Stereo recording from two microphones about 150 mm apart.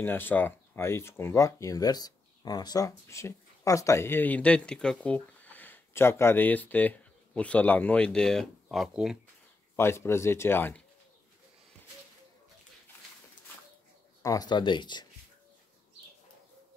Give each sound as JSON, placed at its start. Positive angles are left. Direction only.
{"t": 0.0, "sound": "speech", "side_deg": 15}
{"t": 9.8, "sound": "speech", "side_deg": 15}
{"t": 14.2, "sound": "speech", "side_deg": 25}